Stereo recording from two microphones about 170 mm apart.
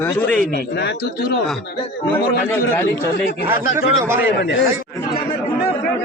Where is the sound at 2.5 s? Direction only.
10° left (ahead or behind).